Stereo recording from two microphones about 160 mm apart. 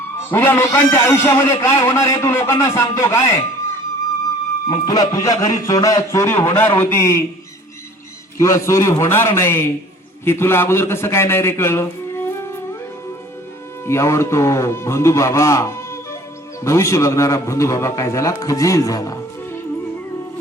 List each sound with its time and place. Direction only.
0.3 s a man's voice: 15° left (ahead or behind)
4.7 s a man's voice: 25° left (ahead or behind)
8.4 s a man's voice: 20° left (ahead or behind)
13.8 s a man's voice: 15° left (ahead or behind)